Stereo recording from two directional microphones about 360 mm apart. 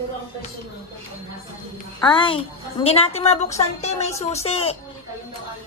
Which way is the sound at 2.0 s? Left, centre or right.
Centre.